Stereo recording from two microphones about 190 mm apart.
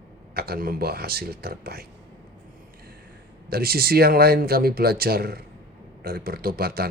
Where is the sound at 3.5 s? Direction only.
55° right (ahead or behind).